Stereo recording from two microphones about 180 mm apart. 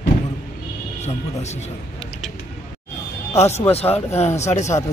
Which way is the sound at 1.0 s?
40° left (ahead or behind).